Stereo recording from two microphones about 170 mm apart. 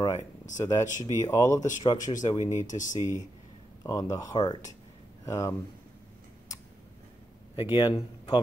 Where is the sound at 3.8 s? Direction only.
20° left (ahead or behind).